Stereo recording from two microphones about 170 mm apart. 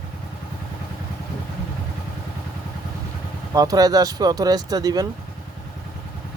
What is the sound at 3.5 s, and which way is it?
Speech, 20° right (ahead or behind).